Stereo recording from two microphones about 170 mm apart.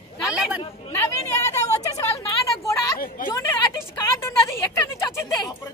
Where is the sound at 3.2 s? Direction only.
55° left (ahead or behind).